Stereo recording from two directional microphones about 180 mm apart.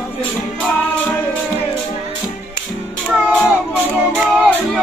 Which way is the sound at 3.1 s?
Centre (ahead or behind).